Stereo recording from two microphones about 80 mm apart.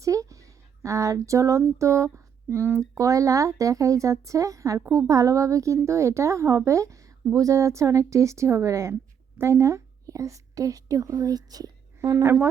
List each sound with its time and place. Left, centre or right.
0.0 s speech: right
11.9 s speech: right